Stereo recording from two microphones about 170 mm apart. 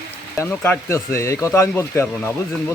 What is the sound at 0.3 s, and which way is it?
Speech, 10° left (ahead or behind).